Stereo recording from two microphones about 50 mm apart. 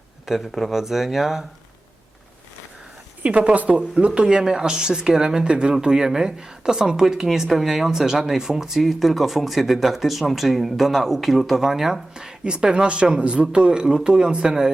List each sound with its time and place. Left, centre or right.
0.3 s speech: centre
3.2 s speech: right
3.9 s speech: right